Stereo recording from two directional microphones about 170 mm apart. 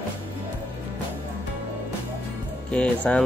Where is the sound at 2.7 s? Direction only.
5° left (ahead or behind).